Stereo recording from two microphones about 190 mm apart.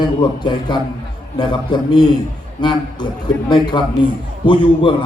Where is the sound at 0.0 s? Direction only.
25° left (ahead or behind).